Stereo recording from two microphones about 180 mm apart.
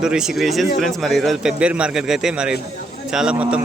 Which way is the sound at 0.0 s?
5° right (ahead or behind).